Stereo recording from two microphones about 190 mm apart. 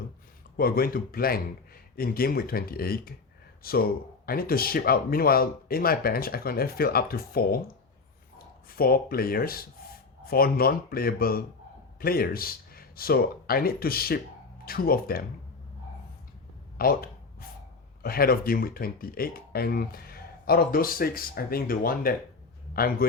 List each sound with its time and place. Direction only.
0.5 s speech: 50° left (ahead or behind)
8.7 s speech: 50° left (ahead or behind)
16.7 s speech: 50° left (ahead or behind)